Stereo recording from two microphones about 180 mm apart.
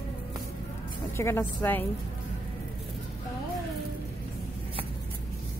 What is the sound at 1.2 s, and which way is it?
Speech, 15° left (ahead or behind).